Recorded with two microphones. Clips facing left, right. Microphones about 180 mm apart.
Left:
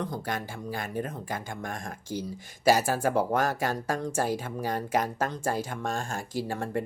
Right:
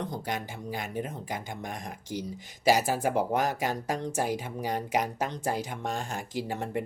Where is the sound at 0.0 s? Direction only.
20° right (ahead or behind).